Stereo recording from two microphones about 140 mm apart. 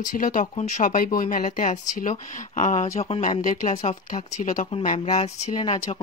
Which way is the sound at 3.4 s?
65° left (ahead or behind).